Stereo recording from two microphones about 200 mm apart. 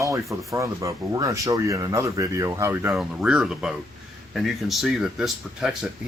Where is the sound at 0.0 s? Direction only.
15° right (ahead or behind).